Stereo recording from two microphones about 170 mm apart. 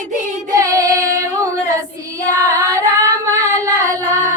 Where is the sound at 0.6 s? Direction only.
20° right (ahead or behind).